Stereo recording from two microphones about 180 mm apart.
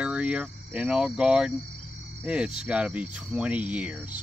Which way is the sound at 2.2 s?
5° right (ahead or behind).